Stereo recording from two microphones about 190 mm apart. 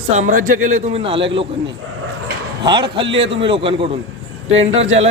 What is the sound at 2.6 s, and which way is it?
A man's voice, 25° right (ahead or behind).